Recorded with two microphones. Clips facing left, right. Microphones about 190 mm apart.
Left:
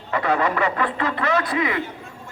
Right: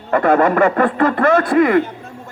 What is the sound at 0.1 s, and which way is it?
Speech, 50° right (ahead or behind).